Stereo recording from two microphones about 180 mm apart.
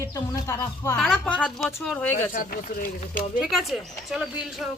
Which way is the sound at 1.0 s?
Centre (ahead or behind).